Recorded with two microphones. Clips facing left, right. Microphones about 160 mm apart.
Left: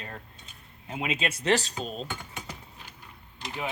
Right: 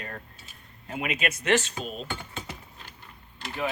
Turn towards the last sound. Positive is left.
turn(degrees=15)  # may be behind; listen again after turning